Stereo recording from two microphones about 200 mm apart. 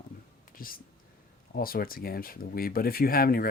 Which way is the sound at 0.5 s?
45° left (ahead or behind).